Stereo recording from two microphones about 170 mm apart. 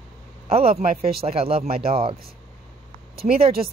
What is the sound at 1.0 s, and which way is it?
Speech, 65° right (ahead or behind).